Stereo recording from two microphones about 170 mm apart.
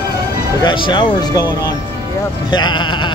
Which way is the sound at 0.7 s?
25° left (ahead or behind).